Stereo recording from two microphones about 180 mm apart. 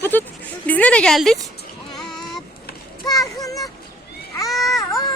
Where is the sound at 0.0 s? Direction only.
10° left (ahead or behind).